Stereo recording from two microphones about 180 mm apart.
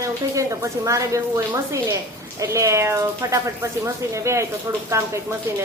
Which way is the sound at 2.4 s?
15° right (ahead or behind).